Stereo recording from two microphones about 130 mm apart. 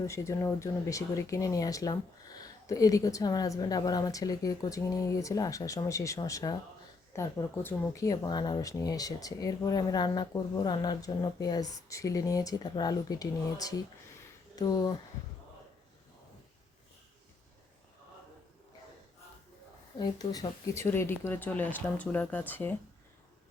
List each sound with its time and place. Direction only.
0.0 s speech: 20° left (ahead or behind)
20.0 s speech: 30° left (ahead or behind); by 22.7 s 15° left (ahead or behind)